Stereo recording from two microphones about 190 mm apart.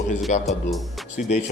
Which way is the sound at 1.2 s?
35° left (ahead or behind).